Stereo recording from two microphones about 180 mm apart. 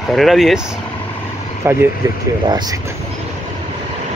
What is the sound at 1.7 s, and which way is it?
Speech, 15° right (ahead or behind).